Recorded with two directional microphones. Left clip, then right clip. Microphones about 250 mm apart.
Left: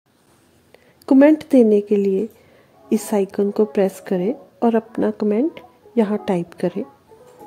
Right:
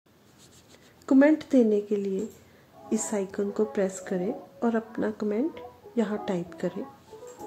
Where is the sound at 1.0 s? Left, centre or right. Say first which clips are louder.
Left 8 dB; left.